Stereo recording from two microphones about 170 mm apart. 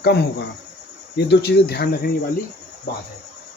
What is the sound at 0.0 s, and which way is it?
Speech, 75° left (ahead or behind).